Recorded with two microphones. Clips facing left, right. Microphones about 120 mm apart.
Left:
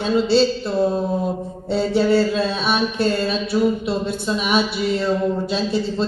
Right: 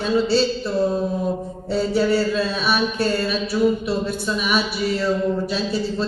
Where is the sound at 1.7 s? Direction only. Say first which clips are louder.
Left 2 dB; 25° left (ahead or behind).